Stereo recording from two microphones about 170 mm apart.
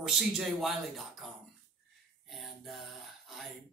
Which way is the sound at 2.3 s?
Centre (ahead or behind).